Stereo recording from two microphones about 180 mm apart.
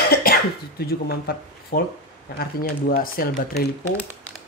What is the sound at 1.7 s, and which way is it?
Speech, 55° left (ahead or behind).